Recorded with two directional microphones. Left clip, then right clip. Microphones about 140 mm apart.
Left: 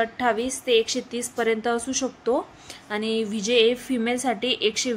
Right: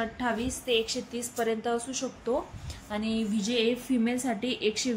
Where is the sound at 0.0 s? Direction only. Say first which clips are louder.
Left 8 dB; 40° left (ahead or behind).